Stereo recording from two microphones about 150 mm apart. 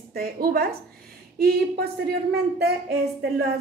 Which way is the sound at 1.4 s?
90° right.